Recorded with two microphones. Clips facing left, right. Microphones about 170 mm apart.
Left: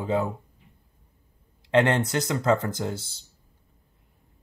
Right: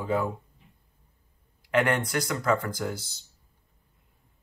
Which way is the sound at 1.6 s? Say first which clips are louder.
Left 3 dB; 25° left (ahead or behind).